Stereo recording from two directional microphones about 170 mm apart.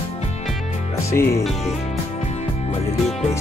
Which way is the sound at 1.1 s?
15° left (ahead or behind).